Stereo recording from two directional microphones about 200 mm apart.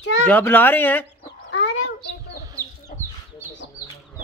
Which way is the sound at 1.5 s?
65° left (ahead or behind).